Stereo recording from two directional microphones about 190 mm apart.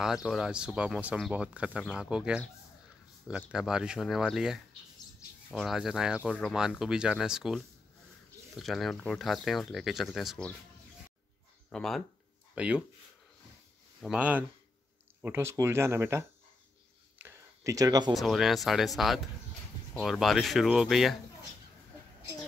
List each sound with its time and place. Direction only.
0.0 s speech: centre (ahead or behind)
11.7 s speech: centre (ahead or behind)
14.0 s speech: 5° right (ahead or behind)
17.2 s a sound: 15° right (ahead or behind)
18.1 s speech: centre (ahead or behind)